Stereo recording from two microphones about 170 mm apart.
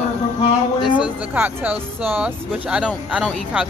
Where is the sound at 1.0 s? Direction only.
10° right (ahead or behind).